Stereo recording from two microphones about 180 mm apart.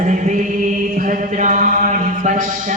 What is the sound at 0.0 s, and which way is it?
Mantra, 45° right (ahead or behind).